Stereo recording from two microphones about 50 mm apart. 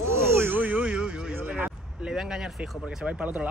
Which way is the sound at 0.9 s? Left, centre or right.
Centre.